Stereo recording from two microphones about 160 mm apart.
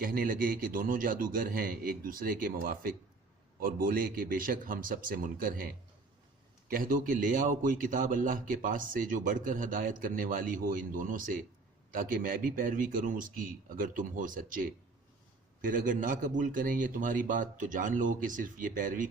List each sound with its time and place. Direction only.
0.0 s a man's voice: 65° right (ahead or behind)